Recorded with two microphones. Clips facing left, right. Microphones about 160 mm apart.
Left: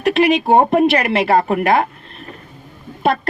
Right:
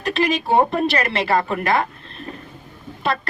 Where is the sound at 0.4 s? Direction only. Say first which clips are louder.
Left 5 dB; 55° left (ahead or behind).